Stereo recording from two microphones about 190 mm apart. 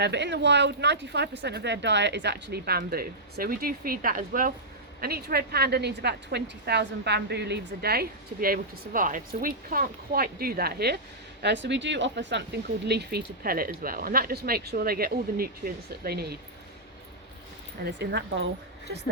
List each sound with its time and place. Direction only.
0.0 s a woman's voice: 65° right (ahead or behind)
17.8 s a woman's voice: 60° right (ahead or behind)